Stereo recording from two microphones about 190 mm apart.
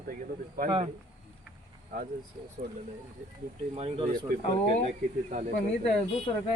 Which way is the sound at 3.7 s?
30° right (ahead or behind).